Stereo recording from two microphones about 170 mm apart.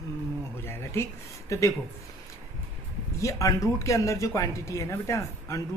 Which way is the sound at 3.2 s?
20° left (ahead or behind).